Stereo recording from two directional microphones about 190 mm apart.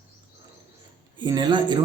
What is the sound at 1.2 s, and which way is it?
Speech, 25° right (ahead or behind).